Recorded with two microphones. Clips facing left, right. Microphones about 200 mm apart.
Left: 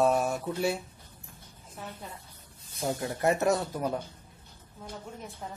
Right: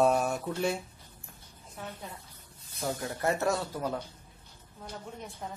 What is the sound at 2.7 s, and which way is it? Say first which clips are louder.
Speech: left 2 dB; 15° left (ahead or behind).